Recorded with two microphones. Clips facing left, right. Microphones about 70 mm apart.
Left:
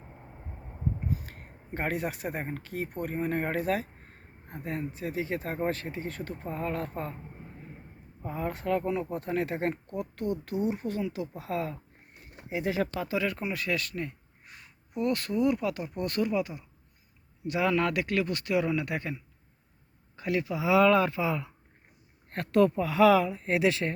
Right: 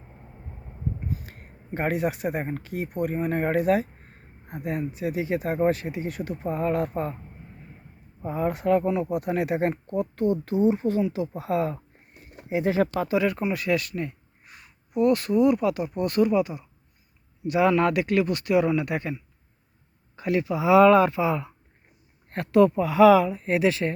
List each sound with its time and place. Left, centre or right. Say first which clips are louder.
1.0 s speech: even; centre
8.2 s speech: right 7 dB; centre; by 12.9 s right
13.1 s speech: right 7 dB; centre
20.1 s speech: right 5 dB; right
22.3 s speech: right 5 dB; centre